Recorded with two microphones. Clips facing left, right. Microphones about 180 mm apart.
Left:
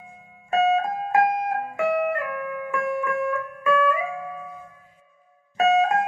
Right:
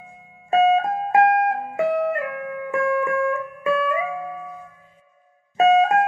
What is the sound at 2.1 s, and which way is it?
Music, 30° right (ahead or behind).